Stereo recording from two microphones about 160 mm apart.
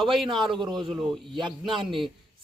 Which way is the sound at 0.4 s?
30° right (ahead or behind).